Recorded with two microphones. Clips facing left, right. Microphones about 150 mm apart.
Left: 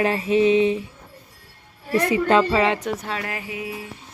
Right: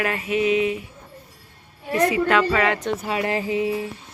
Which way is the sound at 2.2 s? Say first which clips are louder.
Left 2 dB; 25° left (ahead or behind).